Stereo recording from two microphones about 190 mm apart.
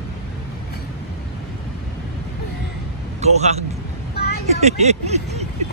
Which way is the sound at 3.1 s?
35° right (ahead or behind).